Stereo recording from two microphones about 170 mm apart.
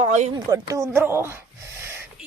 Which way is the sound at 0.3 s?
20° right (ahead or behind).